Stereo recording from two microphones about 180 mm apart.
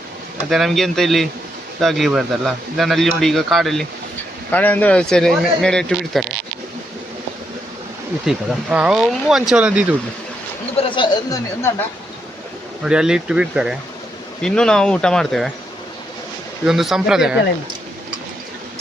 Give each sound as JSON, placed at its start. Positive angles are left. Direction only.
{"t": 0.5, "sound": "speech", "side_deg": 0}
{"t": 8.3, "sound": "speech", "side_deg": -5}
{"t": 10.8, "sound": "speech", "side_deg": 25}
{"t": 12.8, "sound": "speech", "side_deg": -5}
{"t": 16.6, "sound": "speech", "side_deg": 0}